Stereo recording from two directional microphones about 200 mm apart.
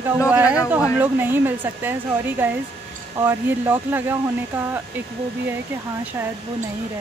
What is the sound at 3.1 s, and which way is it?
Speech, 10° right (ahead or behind).